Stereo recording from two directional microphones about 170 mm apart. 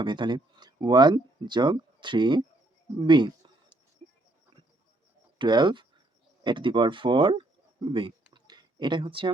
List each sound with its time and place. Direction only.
0.0 s speech: 25° right (ahead or behind)
3.1 s a sound: 25° right (ahead or behind)
5.4 s speech: 25° right (ahead or behind)